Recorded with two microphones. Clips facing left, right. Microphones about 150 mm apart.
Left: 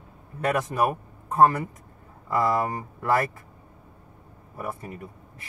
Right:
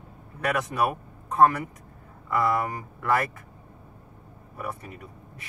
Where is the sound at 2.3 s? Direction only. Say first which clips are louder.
Left 1 dB; 25° left (ahead or behind).